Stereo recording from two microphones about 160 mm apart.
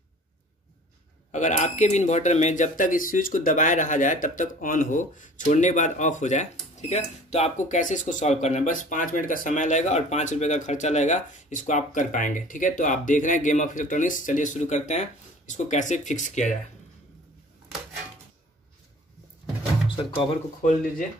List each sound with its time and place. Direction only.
1.3 s speech: 50° left (ahead or behind)
20.0 s speech: 35° left (ahead or behind)